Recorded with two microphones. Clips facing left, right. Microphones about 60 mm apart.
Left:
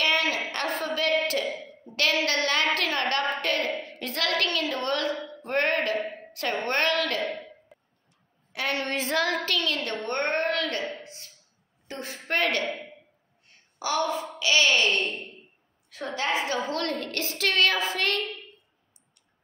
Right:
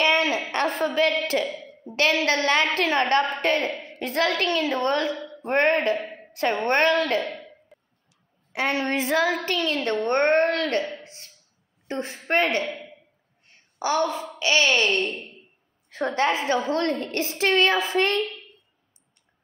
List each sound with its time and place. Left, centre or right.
0.0 s a sound: right
0.5 s a woman's voice: right
7.3 s throat clearing: centre
8.5 s a woman's voice: right
11.9 s a woman's voice: right
13.5 s a sound: right
14.4 s a woman's voice: right